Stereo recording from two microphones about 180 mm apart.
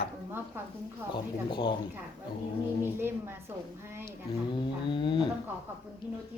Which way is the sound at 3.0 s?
10° right (ahead or behind).